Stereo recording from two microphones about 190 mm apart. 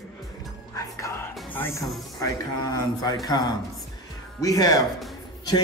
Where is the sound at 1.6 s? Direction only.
15° left (ahead or behind).